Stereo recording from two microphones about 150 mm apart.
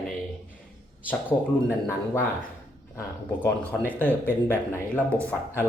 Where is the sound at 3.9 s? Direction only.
10° left (ahead or behind).